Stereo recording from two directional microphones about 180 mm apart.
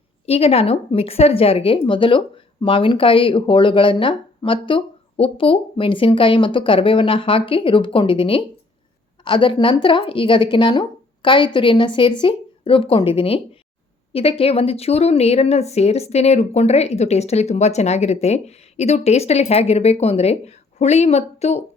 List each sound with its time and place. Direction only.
0.3 s a woman's voice: 35° left (ahead or behind)